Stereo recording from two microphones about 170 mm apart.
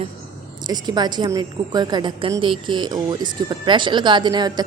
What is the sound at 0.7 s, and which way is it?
Speech, 25° right (ahead or behind).